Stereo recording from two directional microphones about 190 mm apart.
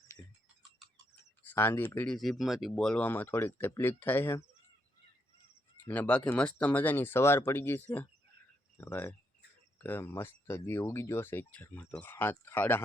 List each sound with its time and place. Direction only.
1.5 s speech: 10° left (ahead or behind)
5.9 s speech: 5° left (ahead or behind)